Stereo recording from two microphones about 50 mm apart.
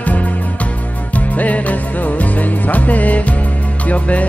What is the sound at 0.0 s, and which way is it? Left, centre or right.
Music, left.